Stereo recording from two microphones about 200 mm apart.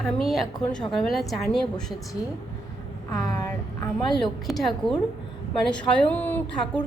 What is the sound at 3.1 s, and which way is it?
A woman's voice, 20° left (ahead or behind).